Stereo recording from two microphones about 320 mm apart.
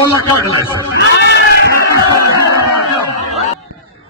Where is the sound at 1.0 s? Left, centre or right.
Left.